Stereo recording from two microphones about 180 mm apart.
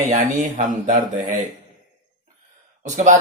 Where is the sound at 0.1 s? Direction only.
45° right (ahead or behind).